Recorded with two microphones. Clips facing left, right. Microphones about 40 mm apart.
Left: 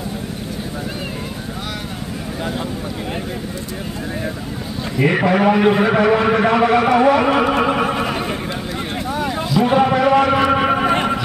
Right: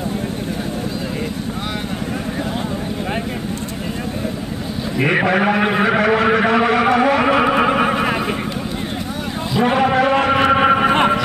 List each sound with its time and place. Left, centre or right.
4.9 s a man's voice: right
7.0 s music: centre
9.7 s a man's voice: centre
9.9 s a sound: right